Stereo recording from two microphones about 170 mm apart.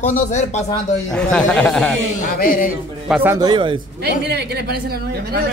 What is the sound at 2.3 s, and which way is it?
Speech, 55° left (ahead or behind).